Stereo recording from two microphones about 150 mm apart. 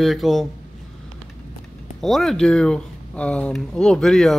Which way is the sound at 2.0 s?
Centre (ahead or behind).